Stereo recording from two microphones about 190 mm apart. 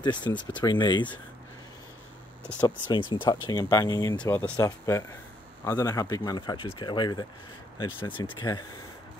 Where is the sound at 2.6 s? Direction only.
25° left (ahead or behind).